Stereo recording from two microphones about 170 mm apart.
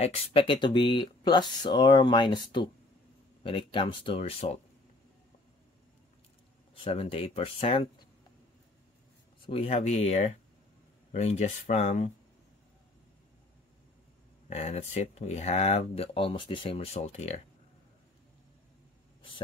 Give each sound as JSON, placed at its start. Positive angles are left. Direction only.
{"t": 0.0, "sound": "speech", "side_deg": 35}
{"t": 6.7, "sound": "speech", "side_deg": 35}
{"t": 9.5, "sound": "speech", "side_deg": 35}
{"t": 14.5, "sound": "speech", "side_deg": 40}